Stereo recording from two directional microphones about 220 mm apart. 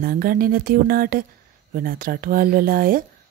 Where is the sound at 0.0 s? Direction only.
40° right (ahead or behind).